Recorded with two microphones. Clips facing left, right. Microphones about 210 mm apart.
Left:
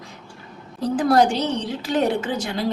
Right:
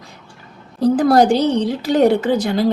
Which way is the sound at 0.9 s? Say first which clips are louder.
Right 4 dB; 35° right (ahead or behind).